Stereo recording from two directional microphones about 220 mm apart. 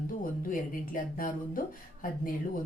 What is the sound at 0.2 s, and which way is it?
Speech, 40° left (ahead or behind).